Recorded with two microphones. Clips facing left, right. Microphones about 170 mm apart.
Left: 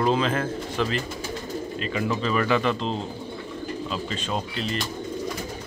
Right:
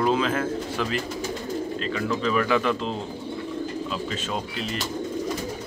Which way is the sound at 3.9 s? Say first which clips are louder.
Even; 5° right (ahead or behind).